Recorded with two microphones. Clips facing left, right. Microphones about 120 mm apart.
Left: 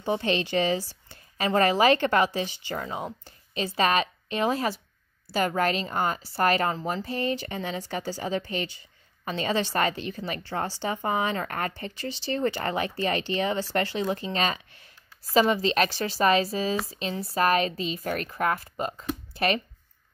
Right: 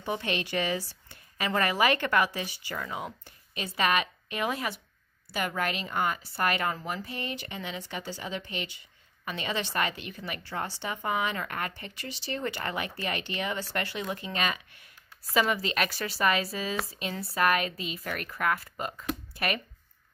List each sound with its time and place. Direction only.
0.0 s a woman's voice: 30° left (ahead or behind)